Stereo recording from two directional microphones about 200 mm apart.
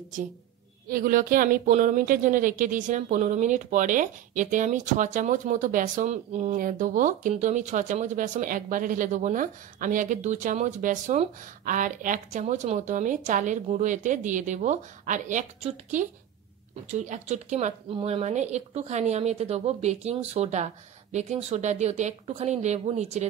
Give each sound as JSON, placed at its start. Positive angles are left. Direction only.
{"t": 0.8, "sound": "speech", "side_deg": -45}